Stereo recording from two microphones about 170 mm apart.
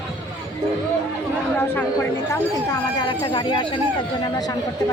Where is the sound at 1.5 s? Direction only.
15° left (ahead or behind).